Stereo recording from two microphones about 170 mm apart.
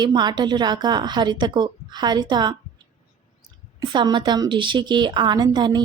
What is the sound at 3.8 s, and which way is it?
A woman's voice, 25° right (ahead or behind).